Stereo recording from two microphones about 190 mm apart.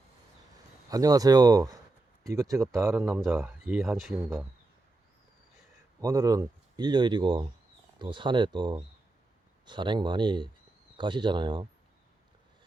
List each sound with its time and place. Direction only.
0.9 s speech: 20° right (ahead or behind)
3.2 s speech: 5° right (ahead or behind)
6.0 s speech: 20° right (ahead or behind)